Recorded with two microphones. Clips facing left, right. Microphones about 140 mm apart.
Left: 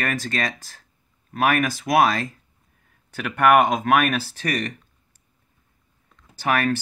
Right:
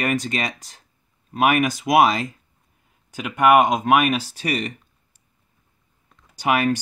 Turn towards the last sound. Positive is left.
turn(degrees=-15)  # may be behind; listen again after turning